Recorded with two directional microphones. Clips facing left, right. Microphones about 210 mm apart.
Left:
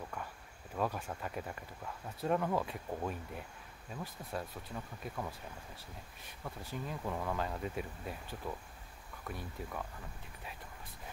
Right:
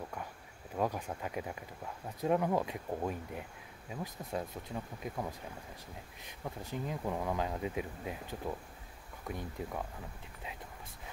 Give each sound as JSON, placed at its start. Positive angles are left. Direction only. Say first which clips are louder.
{"t": 0.7, "sound": "speech", "louder": "right 2 dB", "side_deg": -15}